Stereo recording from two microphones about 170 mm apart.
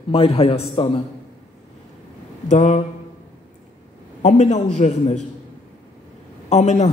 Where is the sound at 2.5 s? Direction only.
40° left (ahead or behind).